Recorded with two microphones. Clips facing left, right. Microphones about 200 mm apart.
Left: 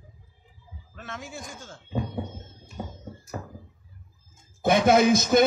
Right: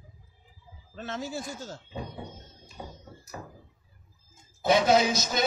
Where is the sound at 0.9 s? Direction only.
30° right (ahead or behind).